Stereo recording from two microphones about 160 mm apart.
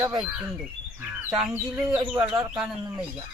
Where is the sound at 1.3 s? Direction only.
5° right (ahead or behind).